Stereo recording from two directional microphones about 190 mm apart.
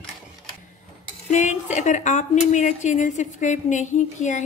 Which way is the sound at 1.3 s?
40° left (ahead or behind).